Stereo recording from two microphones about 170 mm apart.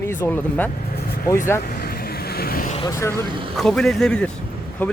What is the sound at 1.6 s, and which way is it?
Vehicle, 60° left (ahead or behind).